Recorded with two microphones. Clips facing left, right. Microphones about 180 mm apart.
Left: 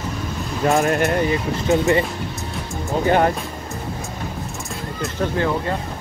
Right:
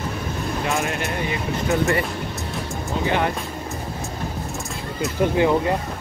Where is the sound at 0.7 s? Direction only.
40° left (ahead or behind).